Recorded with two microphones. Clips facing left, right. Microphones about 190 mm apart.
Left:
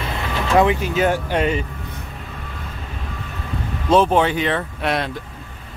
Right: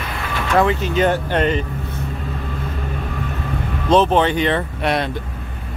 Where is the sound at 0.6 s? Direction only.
15° left (ahead or behind).